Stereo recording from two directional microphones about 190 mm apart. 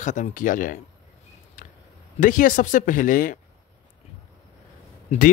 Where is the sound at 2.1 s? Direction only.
45° left (ahead or behind).